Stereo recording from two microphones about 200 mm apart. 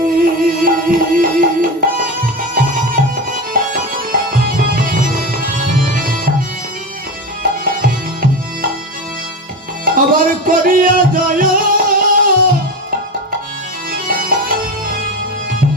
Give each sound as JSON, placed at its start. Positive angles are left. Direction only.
{"t": 0.0, "sound": "music", "side_deg": -45}
{"t": 7.6, "sound": "music", "side_deg": -45}
{"t": 9.8, "sound": "music", "side_deg": -45}
{"t": 13.9, "sound": "music", "side_deg": -45}